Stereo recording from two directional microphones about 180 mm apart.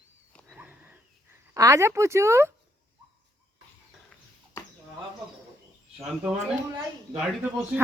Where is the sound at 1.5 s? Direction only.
15° right (ahead or behind).